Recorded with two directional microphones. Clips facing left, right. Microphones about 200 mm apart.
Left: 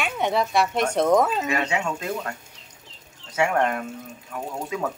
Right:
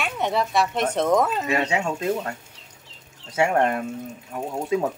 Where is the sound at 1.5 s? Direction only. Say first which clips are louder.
Right 2 dB; 25° right (ahead or behind).